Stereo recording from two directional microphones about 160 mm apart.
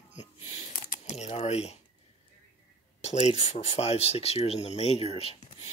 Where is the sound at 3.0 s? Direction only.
45° left (ahead or behind).